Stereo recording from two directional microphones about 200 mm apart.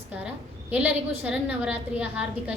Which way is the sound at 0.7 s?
5° right (ahead or behind).